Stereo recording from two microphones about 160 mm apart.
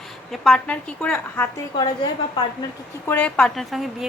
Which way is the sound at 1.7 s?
25° left (ahead or behind).